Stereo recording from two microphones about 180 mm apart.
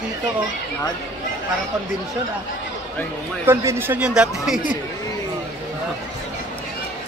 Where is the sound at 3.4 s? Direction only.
15° right (ahead or behind).